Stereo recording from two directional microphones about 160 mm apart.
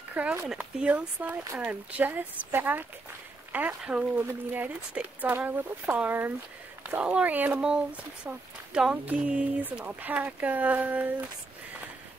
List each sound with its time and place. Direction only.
0.1 s speech: 10° right (ahead or behind)